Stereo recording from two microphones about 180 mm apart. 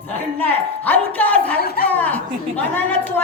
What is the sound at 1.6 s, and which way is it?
Speech, 60° left (ahead or behind).